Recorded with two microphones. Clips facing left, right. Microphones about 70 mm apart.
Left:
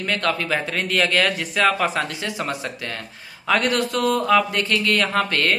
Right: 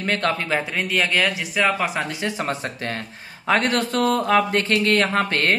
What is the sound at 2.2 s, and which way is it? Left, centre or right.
Speech, right.